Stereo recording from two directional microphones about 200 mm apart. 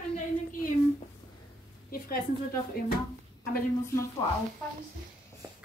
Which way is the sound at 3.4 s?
15° left (ahead or behind).